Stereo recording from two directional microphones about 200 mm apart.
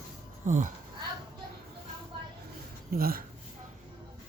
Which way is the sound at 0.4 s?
40° right (ahead or behind).